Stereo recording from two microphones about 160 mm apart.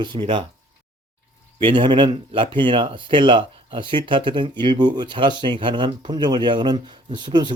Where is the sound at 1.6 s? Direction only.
30° right (ahead or behind).